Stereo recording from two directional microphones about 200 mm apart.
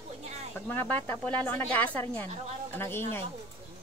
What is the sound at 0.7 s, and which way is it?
Speech, 10° left (ahead or behind).